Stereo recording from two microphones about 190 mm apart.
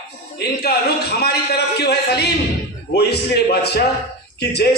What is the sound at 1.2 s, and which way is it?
Speech, 60° left (ahead or behind).